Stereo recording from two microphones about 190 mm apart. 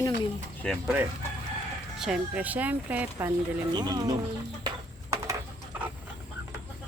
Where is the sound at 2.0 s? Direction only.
5° right (ahead or behind).